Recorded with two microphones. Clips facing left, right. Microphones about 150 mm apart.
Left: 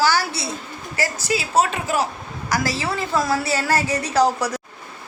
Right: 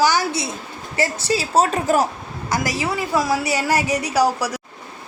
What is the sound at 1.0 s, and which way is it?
A woman's voice, 35° right (ahead or behind).